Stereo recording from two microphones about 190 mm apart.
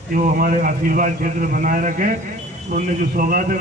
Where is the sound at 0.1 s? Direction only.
45° right (ahead or behind).